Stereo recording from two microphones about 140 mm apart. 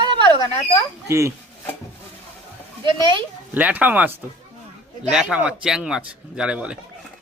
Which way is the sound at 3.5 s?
10° right (ahead or behind).